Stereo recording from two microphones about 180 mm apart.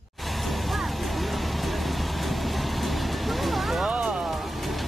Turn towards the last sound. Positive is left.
turn(degrees=0)  # may be behind; listen again after turning